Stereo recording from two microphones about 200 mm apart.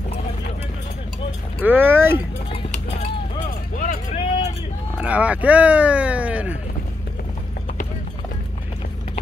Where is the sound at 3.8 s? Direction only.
40° left (ahead or behind).